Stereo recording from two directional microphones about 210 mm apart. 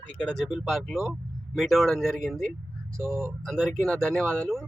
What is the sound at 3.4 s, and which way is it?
Speech, 5° left (ahead or behind).